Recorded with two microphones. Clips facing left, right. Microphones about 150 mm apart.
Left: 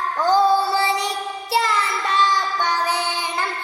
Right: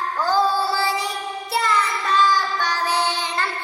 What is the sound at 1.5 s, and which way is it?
Child singing, 25° left (ahead or behind).